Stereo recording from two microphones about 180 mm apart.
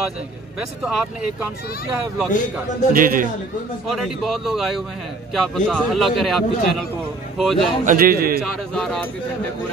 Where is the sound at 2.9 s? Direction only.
50° right (ahead or behind).